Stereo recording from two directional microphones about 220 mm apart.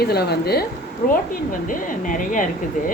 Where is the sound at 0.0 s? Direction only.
45° left (ahead or behind).